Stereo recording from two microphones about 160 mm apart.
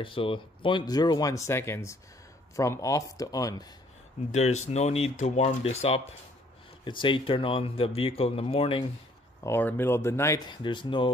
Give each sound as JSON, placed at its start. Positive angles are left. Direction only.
{"t": 0.0, "sound": "speech", "side_deg": 35}
{"t": 4.3, "sound": "speech", "side_deg": 45}
{"t": 9.4, "sound": "speech", "side_deg": 15}